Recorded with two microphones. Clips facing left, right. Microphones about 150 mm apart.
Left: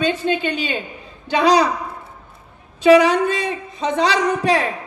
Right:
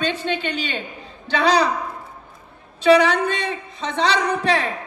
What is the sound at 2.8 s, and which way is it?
A woman's voice, 15° left (ahead or behind).